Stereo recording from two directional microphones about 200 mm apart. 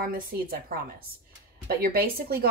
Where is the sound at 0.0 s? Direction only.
45° right (ahead or behind).